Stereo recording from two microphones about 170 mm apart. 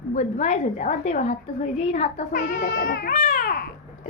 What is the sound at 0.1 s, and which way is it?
A woman's voice, 45° left (ahead or behind).